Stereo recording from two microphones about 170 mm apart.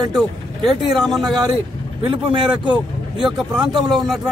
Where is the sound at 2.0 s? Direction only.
30° right (ahead or behind).